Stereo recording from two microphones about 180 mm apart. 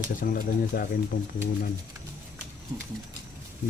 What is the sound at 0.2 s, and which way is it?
Speech, 55° left (ahead or behind).